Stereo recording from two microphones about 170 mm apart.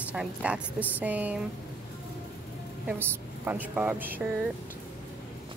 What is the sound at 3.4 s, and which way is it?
Speech, 10° right (ahead or behind).